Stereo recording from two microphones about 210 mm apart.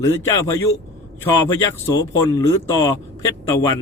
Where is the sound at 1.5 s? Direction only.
15° left (ahead or behind).